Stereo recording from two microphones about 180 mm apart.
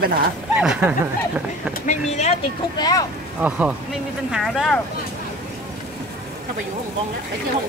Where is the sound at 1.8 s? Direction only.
45° left (ahead or behind).